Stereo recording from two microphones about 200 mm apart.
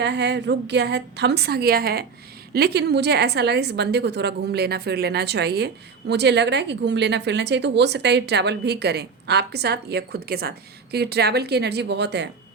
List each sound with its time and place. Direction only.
0.0 s a woman's voice: 60° right (ahead or behind)